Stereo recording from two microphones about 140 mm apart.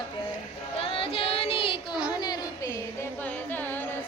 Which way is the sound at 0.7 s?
40° left (ahead or behind).